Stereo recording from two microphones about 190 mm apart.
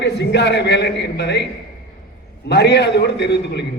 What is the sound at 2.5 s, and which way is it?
A man's voice, 60° left (ahead or behind).